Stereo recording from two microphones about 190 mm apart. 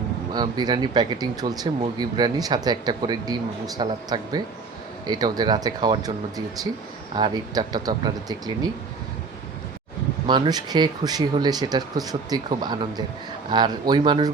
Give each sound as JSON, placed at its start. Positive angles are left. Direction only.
{"t": 0.3, "sound": "speech", "side_deg": -20}
{"t": 10.2, "sound": "speech", "side_deg": -25}